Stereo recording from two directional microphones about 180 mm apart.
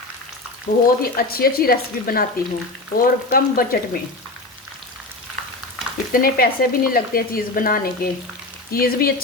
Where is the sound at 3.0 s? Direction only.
55° left (ahead or behind).